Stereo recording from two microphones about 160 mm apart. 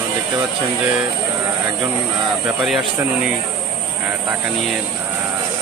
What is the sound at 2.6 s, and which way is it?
Speech, 5° right (ahead or behind).